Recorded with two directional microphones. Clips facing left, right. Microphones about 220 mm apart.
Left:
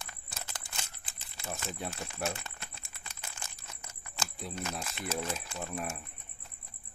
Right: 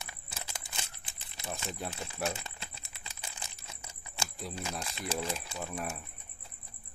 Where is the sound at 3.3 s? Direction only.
15° right (ahead or behind).